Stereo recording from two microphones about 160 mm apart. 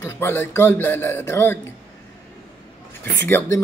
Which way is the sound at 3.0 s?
15° left (ahead or behind).